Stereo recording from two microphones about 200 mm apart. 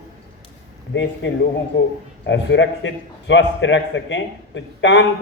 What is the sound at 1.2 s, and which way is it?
A man's voice, 60° left (ahead or behind).